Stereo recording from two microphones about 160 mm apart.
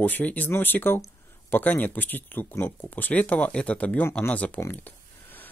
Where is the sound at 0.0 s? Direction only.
10° left (ahead or behind).